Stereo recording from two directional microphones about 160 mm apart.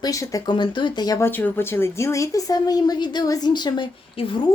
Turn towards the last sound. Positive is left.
turn(degrees=30)  # may be behind; listen again after turning